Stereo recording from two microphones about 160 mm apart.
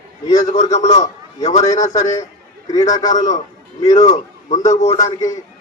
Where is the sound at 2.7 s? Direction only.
25° left (ahead or behind).